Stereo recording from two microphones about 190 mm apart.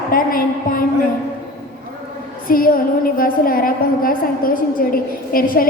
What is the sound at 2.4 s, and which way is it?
A woman's voice, 50° left (ahead or behind).